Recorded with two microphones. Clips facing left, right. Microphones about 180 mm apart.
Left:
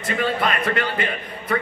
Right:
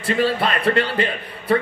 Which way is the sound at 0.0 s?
30° right (ahead or behind).